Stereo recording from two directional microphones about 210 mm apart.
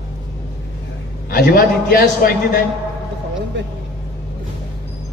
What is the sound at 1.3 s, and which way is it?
A man's voice, 45° left (ahead or behind).